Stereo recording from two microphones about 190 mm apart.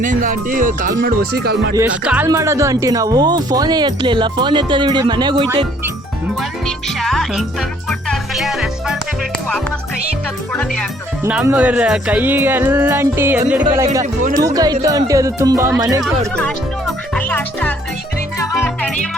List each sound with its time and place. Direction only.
0.0 s speech: 45° right (ahead or behind)
2.0 s speech: 10° right (ahead or behind)
6.7 s a child's voice: centre (ahead or behind)
7.9 s music: 5° left (ahead or behind)
11.2 s speech: 10° right (ahead or behind)
13.7 s speech: 20° right (ahead or behind)
16.3 s music: 5° left (ahead or behind)